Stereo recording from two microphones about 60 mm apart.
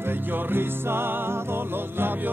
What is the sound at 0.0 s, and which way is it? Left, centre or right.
Music, right.